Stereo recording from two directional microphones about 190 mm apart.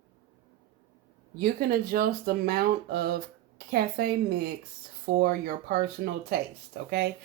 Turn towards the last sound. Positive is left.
turn(degrees=-55)  # may be behind; listen again after turning